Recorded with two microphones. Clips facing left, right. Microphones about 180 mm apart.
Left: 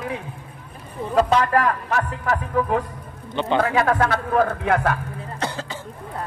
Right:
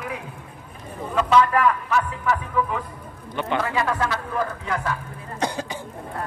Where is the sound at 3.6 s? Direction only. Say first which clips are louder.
Left 4 dB; 55° left (ahead or behind).